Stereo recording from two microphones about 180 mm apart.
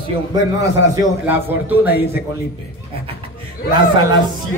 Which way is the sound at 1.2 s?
10° right (ahead or behind).